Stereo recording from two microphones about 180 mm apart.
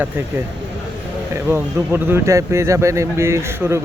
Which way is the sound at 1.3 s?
15° right (ahead or behind).